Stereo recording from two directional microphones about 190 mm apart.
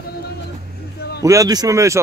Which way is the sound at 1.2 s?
15° right (ahead or behind).